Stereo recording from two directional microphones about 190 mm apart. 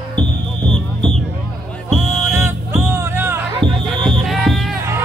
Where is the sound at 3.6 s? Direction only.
Centre (ahead or behind).